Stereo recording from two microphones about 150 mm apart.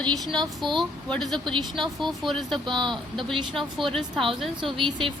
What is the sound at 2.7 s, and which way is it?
Speech, 30° right (ahead or behind).